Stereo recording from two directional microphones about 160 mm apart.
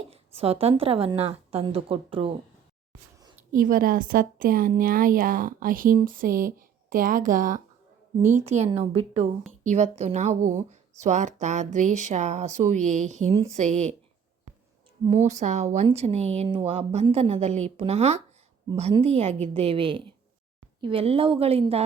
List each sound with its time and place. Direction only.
0.1 s a woman's voice: 40° right (ahead or behind)
3.5 s a woman's voice: 65° right (ahead or behind); by 13.9 s 45° right (ahead or behind)
15.3 s a woman's voice: 50° right (ahead or behind)